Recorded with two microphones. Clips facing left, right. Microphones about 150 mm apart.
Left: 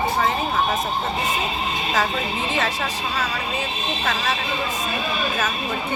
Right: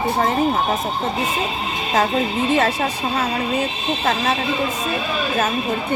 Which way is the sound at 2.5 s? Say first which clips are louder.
Right 6 dB; 50° right (ahead or behind).